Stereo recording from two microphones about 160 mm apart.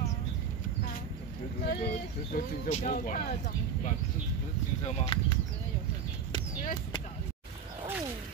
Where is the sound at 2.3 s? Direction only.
55° left (ahead or behind).